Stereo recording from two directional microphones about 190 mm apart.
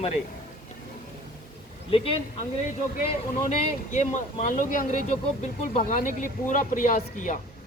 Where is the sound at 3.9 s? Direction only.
40° left (ahead or behind).